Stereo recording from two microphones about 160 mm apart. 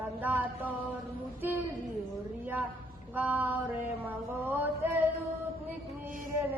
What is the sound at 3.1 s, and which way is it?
Mantra, 10° right (ahead or behind).